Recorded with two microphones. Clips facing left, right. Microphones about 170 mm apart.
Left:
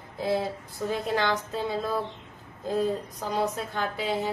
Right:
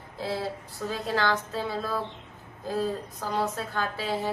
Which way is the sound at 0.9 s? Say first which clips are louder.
Left 1 dB; 20° left (ahead or behind).